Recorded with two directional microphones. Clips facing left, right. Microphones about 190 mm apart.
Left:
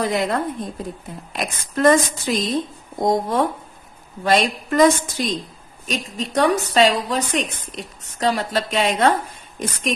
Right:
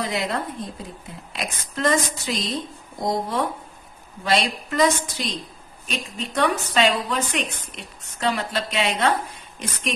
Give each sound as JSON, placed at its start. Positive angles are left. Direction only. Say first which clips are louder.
{"t": 0.0, "sound": "a woman's voice", "louder": "left 5 dB", "side_deg": 50}